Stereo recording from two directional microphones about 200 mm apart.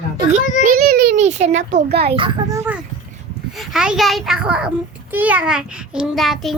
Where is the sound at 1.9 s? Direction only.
55° right (ahead or behind).